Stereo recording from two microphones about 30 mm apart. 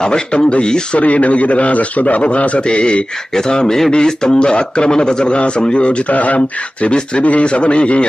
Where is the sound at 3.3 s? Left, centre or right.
Left.